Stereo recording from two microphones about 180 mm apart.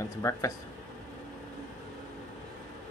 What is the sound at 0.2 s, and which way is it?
Speech, 15° left (ahead or behind).